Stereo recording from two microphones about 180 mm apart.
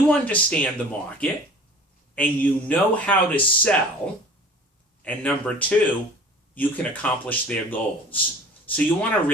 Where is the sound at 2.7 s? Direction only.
10° left (ahead or behind).